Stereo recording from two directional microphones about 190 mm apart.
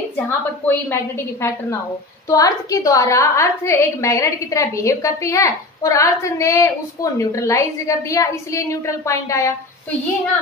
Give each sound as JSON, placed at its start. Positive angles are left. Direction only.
{"t": 0.7, "sound": "a woman's voice", "side_deg": 15}